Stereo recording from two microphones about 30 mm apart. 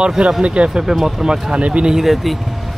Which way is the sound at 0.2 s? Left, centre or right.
Right.